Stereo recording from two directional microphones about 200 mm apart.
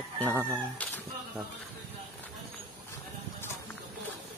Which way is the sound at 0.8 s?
5° left (ahead or behind).